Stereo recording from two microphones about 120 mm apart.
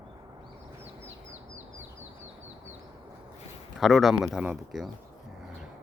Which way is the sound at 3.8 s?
Centre (ahead or behind).